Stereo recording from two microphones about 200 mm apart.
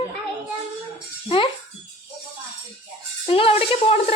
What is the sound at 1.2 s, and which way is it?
Speech, 25° left (ahead or behind).